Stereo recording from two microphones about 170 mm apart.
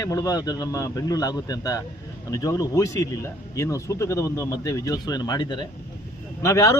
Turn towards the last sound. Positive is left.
turn(degrees=20)  # may be behind; listen again after turning